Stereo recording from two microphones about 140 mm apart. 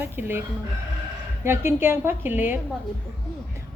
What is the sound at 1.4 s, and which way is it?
A woman's voice, 15° right (ahead or behind).